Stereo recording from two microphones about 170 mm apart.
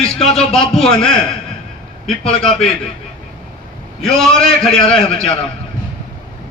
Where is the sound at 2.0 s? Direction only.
35° left (ahead or behind).